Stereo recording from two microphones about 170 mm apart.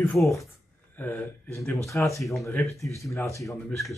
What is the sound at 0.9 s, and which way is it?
Speech, 10° left (ahead or behind).